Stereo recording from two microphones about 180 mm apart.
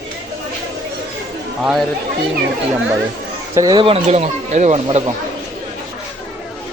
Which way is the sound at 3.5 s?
20° right (ahead or behind).